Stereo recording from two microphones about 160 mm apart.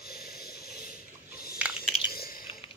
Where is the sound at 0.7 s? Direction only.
70° left (ahead or behind).